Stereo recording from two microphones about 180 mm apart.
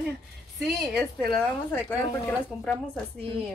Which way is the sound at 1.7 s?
10° left (ahead or behind).